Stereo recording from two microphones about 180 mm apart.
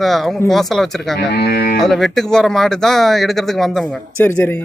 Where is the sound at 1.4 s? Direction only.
60° left (ahead or behind).